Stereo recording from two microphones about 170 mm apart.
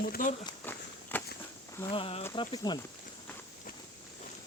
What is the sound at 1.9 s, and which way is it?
Speech, 35° left (ahead or behind).